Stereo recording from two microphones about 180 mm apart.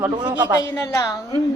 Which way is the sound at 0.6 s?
20° left (ahead or behind).